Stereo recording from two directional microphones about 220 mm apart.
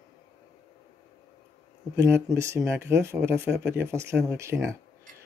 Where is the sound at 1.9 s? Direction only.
15° right (ahead or behind).